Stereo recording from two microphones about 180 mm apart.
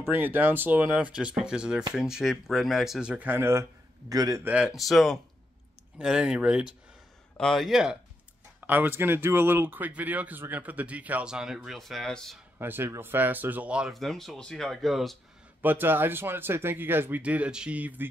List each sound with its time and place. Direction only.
0.0 s a man's voice: 10° right (ahead or behind)
4.5 s speech: 5° right (ahead or behind)
12.5 s speech: 10° right (ahead or behind)
15.6 s speech: 10° right (ahead or behind)